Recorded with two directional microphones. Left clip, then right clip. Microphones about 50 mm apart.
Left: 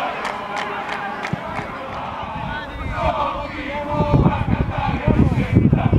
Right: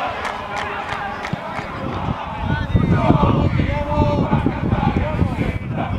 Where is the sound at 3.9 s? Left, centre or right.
Right.